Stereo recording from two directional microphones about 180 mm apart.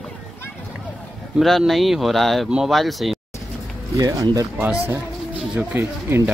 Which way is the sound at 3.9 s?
20° right (ahead or behind).